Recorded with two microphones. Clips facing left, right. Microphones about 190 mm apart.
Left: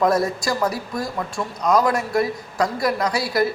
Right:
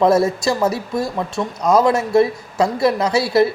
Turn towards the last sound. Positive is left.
turn(degrees=-25)  # may be behind; listen again after turning